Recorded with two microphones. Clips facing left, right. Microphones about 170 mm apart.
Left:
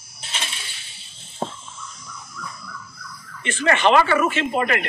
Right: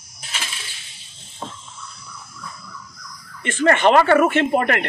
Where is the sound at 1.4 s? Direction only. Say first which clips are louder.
Left 5 dB; 40° left (ahead or behind).